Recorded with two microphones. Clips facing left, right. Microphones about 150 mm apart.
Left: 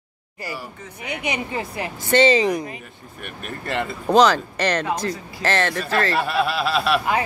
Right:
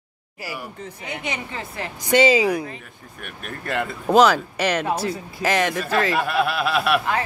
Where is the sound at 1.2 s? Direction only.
15° left (ahead or behind).